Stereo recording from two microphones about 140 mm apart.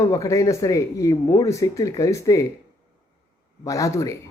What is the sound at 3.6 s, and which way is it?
Speech, 25° left (ahead or behind).